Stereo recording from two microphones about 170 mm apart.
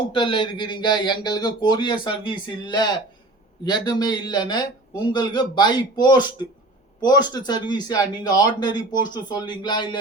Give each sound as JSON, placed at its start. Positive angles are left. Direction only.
{"t": 0.1, "sound": "a man's voice", "side_deg": 30}